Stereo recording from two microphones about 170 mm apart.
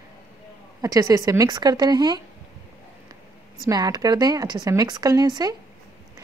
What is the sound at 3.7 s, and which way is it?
Speech, 20° right (ahead or behind).